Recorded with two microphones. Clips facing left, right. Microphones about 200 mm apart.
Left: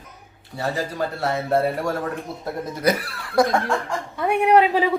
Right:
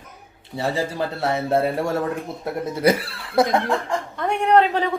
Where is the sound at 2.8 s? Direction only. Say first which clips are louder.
Right 3 dB; 25° right (ahead or behind).